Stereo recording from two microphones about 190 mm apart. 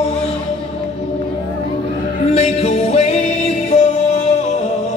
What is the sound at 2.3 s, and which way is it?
Music, 35° left (ahead or behind).